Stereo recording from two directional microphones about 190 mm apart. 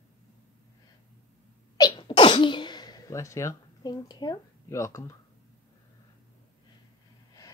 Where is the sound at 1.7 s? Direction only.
20° left (ahead or behind).